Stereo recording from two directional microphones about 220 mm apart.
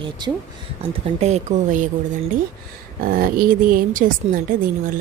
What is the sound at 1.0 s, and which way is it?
Speech, 30° right (ahead or behind).